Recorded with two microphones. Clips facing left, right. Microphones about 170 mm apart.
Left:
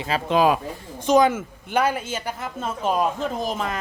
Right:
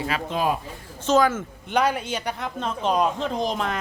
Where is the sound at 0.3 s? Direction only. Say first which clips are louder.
Left 8 dB; 90° left.